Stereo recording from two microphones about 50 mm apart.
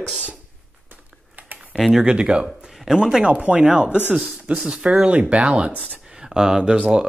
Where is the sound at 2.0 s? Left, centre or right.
Right.